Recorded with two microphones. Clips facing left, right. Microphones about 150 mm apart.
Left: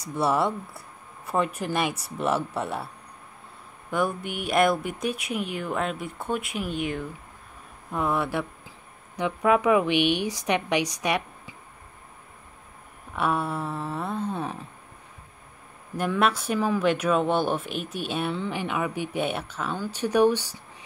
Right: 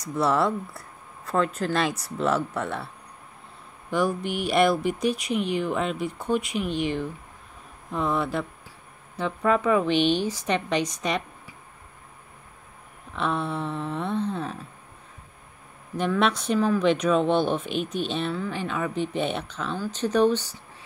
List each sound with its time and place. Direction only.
0.1 s speech: 25° left (ahead or behind)
1.3 s a woman's voice: 15° left (ahead or behind)
2.1 s speech: 25° left (ahead or behind)
4.3 s a woman's voice: centre (ahead or behind)
13.1 s speech: 5° left (ahead or behind)
14.4 s a woman's voice: 15° left (ahead or behind)
16.0 s speech: 5° left (ahead or behind)
18.3 s a woman's voice: 20° left (ahead or behind)